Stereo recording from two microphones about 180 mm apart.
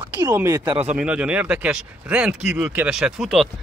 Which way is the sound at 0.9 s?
5° right (ahead or behind).